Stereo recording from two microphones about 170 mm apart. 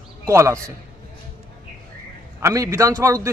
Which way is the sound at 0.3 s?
20° right (ahead or behind).